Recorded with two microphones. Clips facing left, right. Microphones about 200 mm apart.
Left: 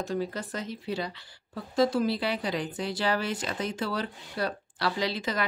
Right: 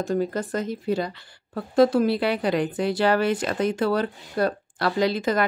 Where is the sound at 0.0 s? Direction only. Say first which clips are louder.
Right 7 dB; 50° right (ahead or behind).